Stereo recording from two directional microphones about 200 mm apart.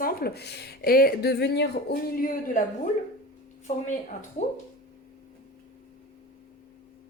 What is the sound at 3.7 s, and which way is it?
Speech, 35° left (ahead or behind).